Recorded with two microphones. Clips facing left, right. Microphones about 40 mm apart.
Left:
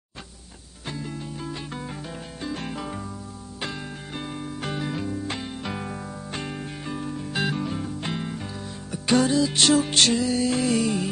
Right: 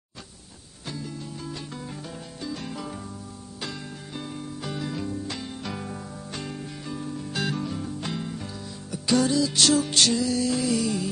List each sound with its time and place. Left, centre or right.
0.8 s music: left